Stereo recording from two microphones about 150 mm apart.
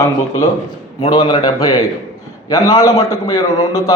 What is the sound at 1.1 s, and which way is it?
A man's voice, 30° left (ahead or behind).